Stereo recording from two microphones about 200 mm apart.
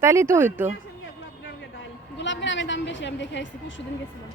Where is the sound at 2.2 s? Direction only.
65° left (ahead or behind).